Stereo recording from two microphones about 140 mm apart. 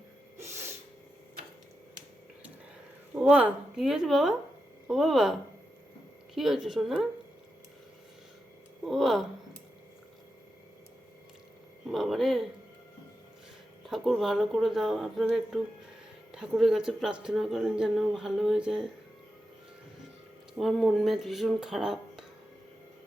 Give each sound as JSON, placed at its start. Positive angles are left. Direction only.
{"t": 0.3, "sound": "snort", "side_deg": -20}
{"t": 3.2, "sound": "speech", "side_deg": -10}
{"t": 8.9, "sound": "speech", "side_deg": 0}
{"t": 11.9, "sound": "speech", "side_deg": 0}
{"t": 13.8, "sound": "speech", "side_deg": 0}
{"t": 20.6, "sound": "speech", "side_deg": 0}